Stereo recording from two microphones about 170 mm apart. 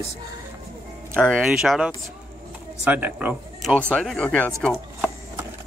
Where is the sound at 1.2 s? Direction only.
Centre (ahead or behind).